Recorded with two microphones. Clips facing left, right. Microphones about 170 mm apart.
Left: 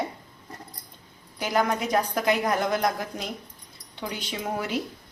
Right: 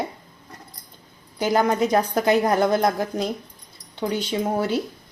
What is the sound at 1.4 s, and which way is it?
A woman's voice, 30° right (ahead or behind).